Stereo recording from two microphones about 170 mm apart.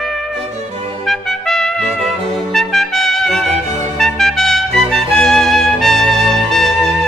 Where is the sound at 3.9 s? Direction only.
Centre (ahead or behind).